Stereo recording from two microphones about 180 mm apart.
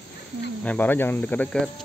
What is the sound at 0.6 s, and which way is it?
Speech, 10° left (ahead or behind).